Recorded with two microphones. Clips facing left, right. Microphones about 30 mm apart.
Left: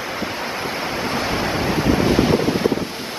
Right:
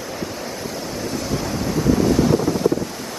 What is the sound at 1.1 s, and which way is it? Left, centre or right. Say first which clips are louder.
Waves: left 2 dB; left.